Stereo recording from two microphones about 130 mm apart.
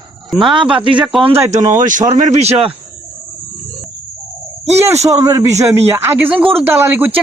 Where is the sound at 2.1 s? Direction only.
60° right (ahead or behind).